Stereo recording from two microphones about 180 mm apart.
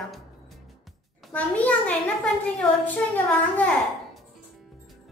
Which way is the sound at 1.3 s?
10° left (ahead or behind).